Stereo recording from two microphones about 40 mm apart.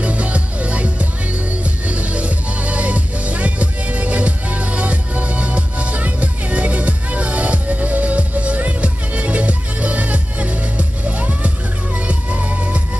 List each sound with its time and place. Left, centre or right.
0.0 s music: right